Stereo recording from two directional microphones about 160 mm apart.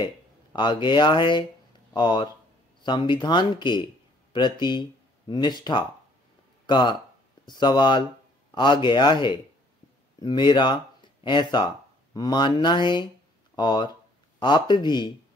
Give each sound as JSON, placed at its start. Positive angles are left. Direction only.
{"t": 0.0, "sound": "speech", "side_deg": 30}